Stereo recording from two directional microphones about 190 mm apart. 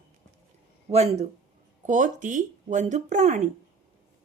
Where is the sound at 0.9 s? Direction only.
35° right (ahead or behind).